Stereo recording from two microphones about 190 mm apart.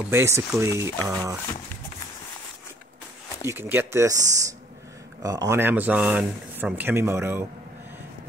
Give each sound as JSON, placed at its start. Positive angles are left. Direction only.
{"t": 0.1, "sound": "speech", "side_deg": -15}
{"t": 3.4, "sound": "speech", "side_deg": -10}